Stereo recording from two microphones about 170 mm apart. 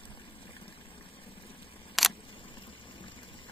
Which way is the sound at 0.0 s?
30° left (ahead or behind).